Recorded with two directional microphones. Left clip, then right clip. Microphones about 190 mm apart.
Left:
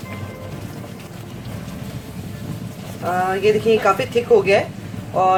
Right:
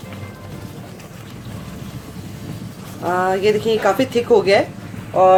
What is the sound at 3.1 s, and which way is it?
Speech, 35° right (ahead or behind).